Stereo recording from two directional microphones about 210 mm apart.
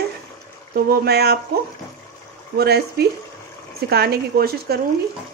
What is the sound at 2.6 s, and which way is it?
Speech, 50° right (ahead or behind).